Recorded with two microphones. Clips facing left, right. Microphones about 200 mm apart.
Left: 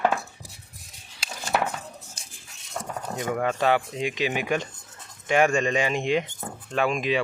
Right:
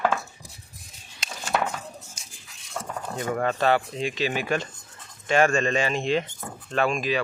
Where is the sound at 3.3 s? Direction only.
10° left (ahead or behind).